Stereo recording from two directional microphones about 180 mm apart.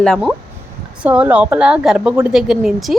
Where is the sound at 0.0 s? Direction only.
Centre (ahead or behind).